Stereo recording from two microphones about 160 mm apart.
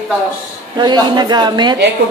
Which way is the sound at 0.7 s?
25° right (ahead or behind).